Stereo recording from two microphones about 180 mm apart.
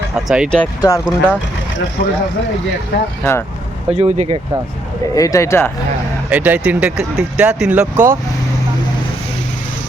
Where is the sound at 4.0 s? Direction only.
40° right (ahead or behind).